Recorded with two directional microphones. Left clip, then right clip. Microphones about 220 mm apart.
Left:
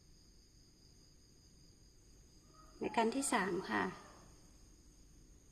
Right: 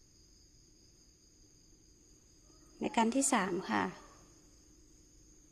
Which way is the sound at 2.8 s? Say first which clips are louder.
Right 4 dB; 30° right (ahead or behind).